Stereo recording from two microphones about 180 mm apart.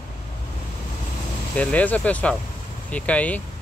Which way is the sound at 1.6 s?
10° left (ahead or behind).